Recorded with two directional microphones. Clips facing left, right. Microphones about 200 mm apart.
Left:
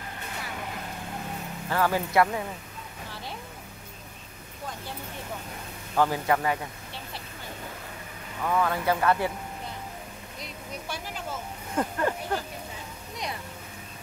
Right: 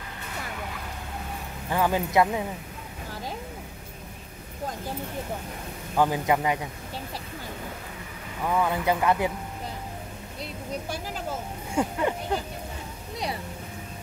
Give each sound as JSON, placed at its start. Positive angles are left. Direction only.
{"t": 1.7, "sound": "speech", "side_deg": -15}
{"t": 5.9, "sound": "speech", "side_deg": -15}
{"t": 8.5, "sound": "speech", "side_deg": -15}
{"t": 11.7, "sound": "speech", "side_deg": -15}